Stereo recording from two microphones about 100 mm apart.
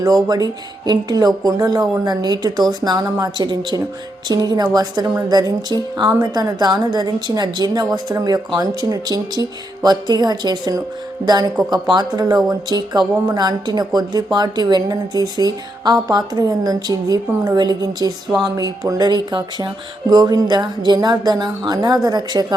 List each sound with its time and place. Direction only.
0.0 s a woman's voice: 40° right (ahead or behind)
1.5 s music: 40° right (ahead or behind)
4.3 s a woman's voice: 45° right (ahead or behind)
11.7 s music: 45° right (ahead or behind)
14.3 s a woman's voice: 45° right (ahead or behind)
18.4 s music: 40° right (ahead or behind)